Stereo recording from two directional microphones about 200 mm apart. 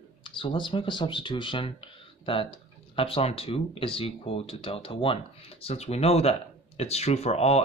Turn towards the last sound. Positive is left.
turn(degrees=30)  # may be behind; listen again after turning